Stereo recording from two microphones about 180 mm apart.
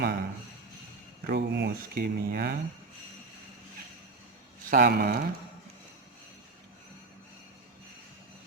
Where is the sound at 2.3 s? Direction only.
60° right (ahead or behind).